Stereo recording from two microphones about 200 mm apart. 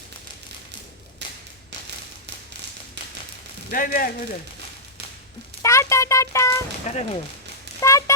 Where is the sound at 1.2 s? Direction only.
60° right (ahead or behind).